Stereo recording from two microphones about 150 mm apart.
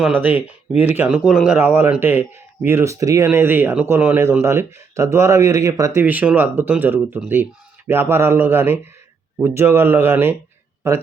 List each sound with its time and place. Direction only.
0.0 s speech: 10° right (ahead or behind)
1.5 s speech: 15° right (ahead or behind)